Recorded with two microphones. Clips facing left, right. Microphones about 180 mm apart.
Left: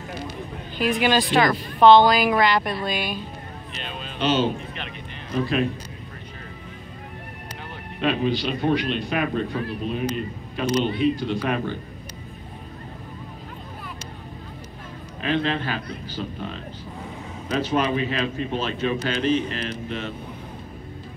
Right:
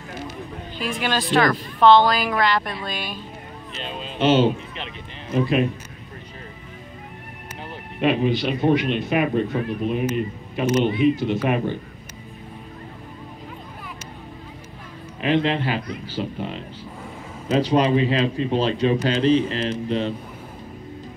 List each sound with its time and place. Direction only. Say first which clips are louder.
0.7 s speech: left 4 dB; 5° left (ahead or behind)
3.8 s speech: right 4 dB; 25° right (ahead or behind)
8.0 s a man's voice: right 3 dB; 10° right (ahead or behind)
15.2 s speech: right 3 dB; 20° right (ahead or behind)
17.5 s speech: right 5 dB; 35° right (ahead or behind)